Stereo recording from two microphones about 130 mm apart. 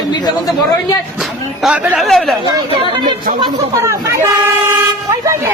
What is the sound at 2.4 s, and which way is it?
Speech, 35° right (ahead or behind).